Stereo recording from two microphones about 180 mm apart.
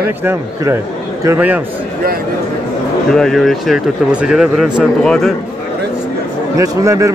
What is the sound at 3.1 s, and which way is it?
Speech, centre (ahead or behind).